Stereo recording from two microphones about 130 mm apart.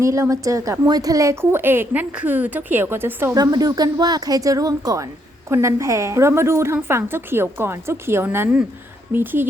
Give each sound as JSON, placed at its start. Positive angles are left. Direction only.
{"t": 0.0, "sound": "a woman's voice", "side_deg": -25}
{"t": 3.3, "sound": "a woman's voice", "side_deg": -30}